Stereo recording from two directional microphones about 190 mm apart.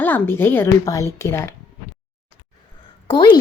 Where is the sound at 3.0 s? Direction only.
25° left (ahead or behind).